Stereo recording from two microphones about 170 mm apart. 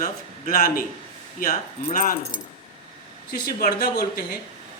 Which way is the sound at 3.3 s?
60° left (ahead or behind).